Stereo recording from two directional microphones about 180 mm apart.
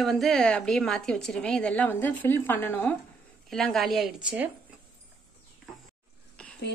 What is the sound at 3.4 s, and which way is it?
A woman's voice, centre (ahead or behind).